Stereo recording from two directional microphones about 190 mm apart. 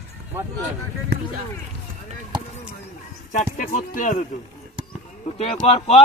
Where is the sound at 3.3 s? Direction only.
40° left (ahead or behind).